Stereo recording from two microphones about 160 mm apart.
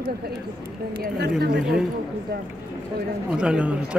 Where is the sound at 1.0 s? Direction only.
90° right.